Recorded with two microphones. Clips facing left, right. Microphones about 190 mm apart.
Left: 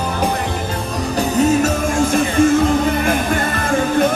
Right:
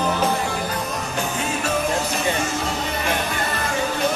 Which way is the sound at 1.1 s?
40° left (ahead or behind).